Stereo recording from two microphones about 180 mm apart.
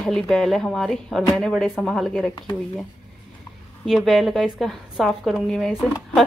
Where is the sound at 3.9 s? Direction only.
Centre (ahead or behind).